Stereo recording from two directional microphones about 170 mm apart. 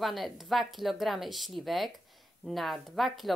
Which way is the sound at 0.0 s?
Centre (ahead or behind).